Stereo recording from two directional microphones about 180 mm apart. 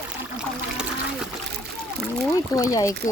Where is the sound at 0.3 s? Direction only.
5° right (ahead or behind).